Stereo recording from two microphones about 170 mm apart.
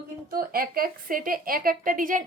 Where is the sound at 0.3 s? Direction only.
60° right (ahead or behind).